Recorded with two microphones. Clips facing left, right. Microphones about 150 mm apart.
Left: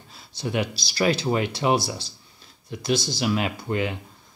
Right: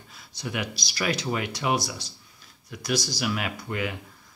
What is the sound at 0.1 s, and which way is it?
Speech, 30° left (ahead or behind).